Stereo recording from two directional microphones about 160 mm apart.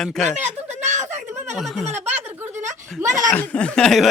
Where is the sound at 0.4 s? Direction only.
45° right (ahead or behind).